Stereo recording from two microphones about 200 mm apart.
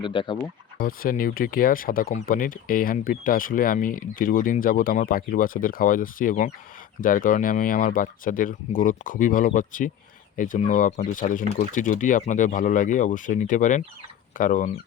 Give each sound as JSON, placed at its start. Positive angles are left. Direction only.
{"t": 0.0, "sound": "speech", "side_deg": 25}
{"t": 0.8, "sound": "speech", "side_deg": 45}